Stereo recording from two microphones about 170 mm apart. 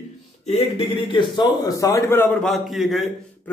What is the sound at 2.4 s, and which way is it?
Speech, centre (ahead or behind).